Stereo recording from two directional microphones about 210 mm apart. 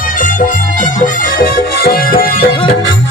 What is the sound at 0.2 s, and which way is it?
Music, 40° left (ahead or behind).